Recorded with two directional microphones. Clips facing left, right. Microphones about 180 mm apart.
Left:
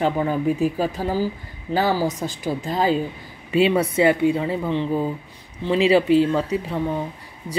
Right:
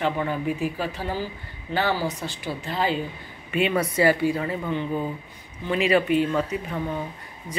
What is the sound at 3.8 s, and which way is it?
Speech, 25° left (ahead or behind).